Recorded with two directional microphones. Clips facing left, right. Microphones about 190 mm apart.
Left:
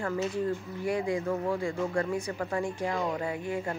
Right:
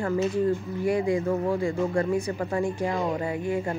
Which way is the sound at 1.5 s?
25° right (ahead or behind).